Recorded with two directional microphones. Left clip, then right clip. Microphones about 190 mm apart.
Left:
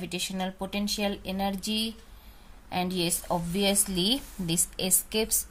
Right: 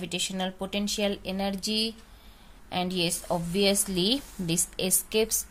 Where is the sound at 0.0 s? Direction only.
20° right (ahead or behind).